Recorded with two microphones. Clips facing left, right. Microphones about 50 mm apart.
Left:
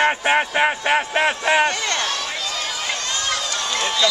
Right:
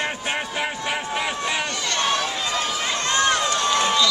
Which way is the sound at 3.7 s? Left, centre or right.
Centre.